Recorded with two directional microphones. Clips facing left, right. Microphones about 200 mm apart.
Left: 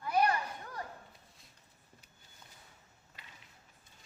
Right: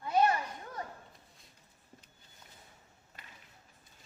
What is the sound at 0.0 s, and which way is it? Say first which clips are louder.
Children playing: right 2 dB; 25° right (ahead or behind).